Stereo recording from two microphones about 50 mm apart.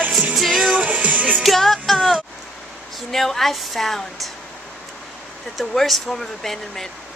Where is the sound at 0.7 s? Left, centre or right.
Right.